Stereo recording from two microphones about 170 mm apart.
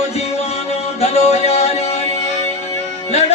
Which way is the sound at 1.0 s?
40° left (ahead or behind).